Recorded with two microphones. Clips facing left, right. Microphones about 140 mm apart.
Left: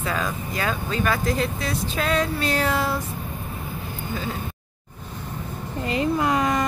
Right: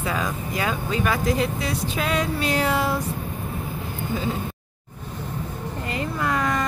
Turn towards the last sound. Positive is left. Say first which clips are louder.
# left 3 dB
turn(degrees=20)  # may be behind; listen again after turning